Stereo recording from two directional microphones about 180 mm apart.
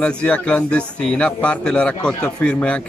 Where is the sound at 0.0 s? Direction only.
5° left (ahead or behind).